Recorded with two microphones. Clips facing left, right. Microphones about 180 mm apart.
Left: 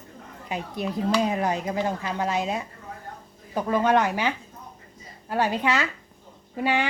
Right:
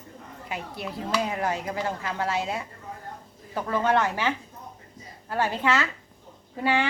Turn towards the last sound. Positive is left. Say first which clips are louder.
# even
turn(degrees=15)  # may be behind; listen again after turning